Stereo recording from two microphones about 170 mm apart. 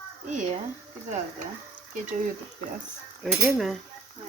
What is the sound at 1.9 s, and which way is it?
Frying, 45° right (ahead or behind).